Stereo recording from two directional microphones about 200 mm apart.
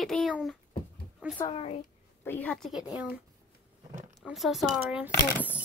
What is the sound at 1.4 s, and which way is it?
Speech, 25° left (ahead or behind).